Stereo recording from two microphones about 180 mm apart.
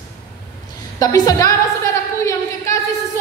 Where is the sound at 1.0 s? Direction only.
20° left (ahead or behind).